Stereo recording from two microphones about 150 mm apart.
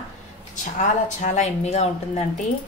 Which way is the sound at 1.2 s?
50° left (ahead or behind).